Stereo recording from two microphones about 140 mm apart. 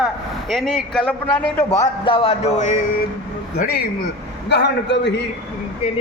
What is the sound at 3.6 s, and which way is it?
Speech, 80° left.